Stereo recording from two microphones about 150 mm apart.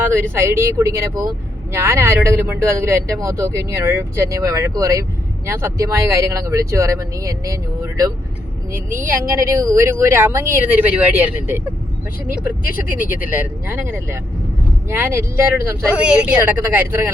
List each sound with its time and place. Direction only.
0.1 s speech: 15° right (ahead or behind)
13.1 s speech: 65° left (ahead or behind)
13.3 s speech: 10° right (ahead or behind)
16.0 s speech: 5° right (ahead or behind)